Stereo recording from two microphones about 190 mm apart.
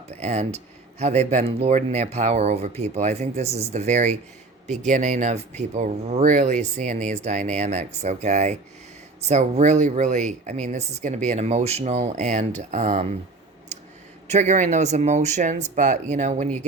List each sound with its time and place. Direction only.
0.1 s speech: 35° right (ahead or behind)
14.3 s speech: 40° right (ahead or behind)